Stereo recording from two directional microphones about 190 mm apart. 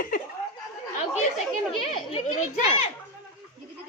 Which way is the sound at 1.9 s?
35° left (ahead or behind).